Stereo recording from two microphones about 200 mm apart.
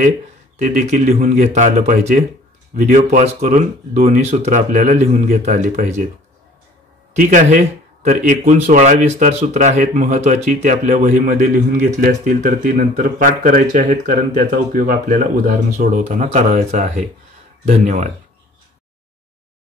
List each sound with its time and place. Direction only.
0.6 s speech: 40° right (ahead or behind)
7.2 s speech: 40° right (ahead or behind)